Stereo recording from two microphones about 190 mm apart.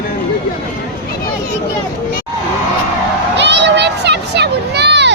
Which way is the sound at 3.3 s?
70° right (ahead or behind).